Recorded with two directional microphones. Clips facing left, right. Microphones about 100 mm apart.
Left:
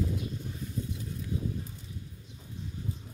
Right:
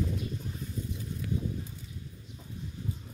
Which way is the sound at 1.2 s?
70° right (ahead or behind).